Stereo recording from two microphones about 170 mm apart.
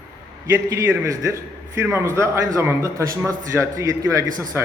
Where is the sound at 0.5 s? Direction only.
15° right (ahead or behind).